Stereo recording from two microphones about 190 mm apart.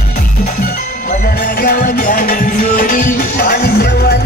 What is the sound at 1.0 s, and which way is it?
Music, 45° left (ahead or behind).